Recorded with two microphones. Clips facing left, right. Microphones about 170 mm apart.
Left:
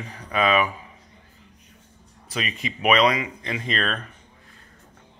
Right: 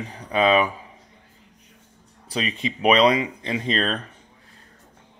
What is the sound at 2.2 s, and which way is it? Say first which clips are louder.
Speech: right 3 dB; 30° right (ahead or behind).